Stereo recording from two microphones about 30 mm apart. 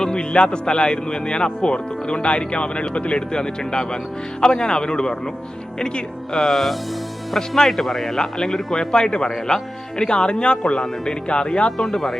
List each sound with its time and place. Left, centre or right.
0.0 s speech: left
3.2 s speech: left
6.5 s speech: centre
7.7 s speech: centre
8.1 s speech: centre
8.9 s speech: left
11.8 s speech: centre